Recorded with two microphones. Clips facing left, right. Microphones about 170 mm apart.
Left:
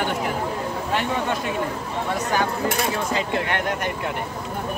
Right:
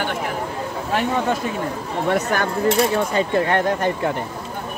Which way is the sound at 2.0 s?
65° right (ahead or behind).